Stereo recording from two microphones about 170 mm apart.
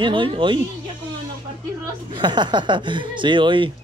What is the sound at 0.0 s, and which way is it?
Speech, 30° right (ahead or behind).